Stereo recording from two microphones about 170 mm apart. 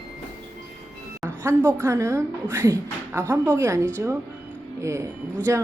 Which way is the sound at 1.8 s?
15° right (ahead or behind).